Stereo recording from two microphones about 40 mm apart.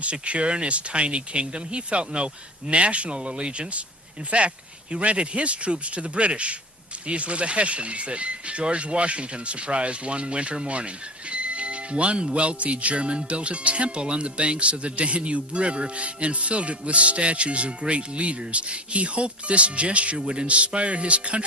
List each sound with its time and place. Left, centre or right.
0.0 s speech: right